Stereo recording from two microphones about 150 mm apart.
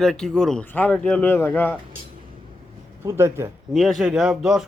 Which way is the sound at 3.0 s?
15° right (ahead or behind).